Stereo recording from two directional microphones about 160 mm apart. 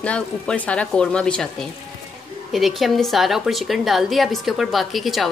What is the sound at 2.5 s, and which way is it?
A woman's voice, centre (ahead or behind).